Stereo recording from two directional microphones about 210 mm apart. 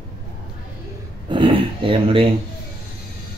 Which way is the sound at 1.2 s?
25° right (ahead or behind).